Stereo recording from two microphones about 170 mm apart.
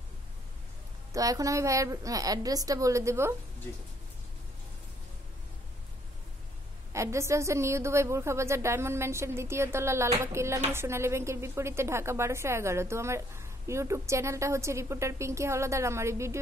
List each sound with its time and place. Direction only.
1.1 s a woman's voice: 20° right (ahead or behind)
6.9 s a woman's voice: 15° right (ahead or behind)